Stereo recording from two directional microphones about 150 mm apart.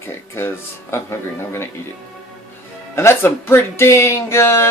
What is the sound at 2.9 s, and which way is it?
Speech, 15° left (ahead or behind).